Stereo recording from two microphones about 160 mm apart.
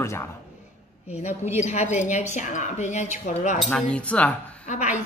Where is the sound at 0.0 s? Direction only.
15° left (ahead or behind).